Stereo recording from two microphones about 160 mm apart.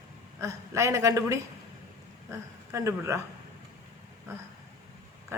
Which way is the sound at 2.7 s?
20° right (ahead or behind).